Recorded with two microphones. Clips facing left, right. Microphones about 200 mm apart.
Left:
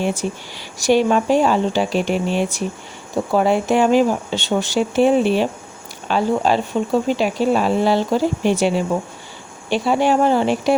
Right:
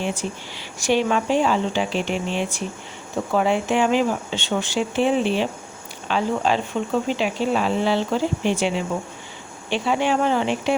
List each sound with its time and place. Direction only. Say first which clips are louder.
0.0 s speech: left 5 dB; 45° left (ahead or behind)